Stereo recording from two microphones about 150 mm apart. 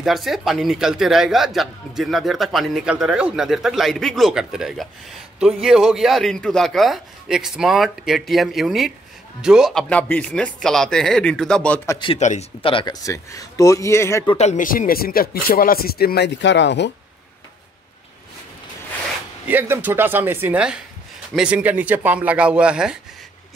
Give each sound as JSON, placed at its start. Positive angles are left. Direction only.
{"t": 0.0, "sound": "a man's voice", "side_deg": 0}
{"t": 12.2, "sound": "speech", "side_deg": 50}
{"t": 12.6, "sound": "speech", "side_deg": 30}
{"t": 14.3, "sound": "speech", "side_deg": 50}
{"t": 19.4, "sound": "speech", "side_deg": -10}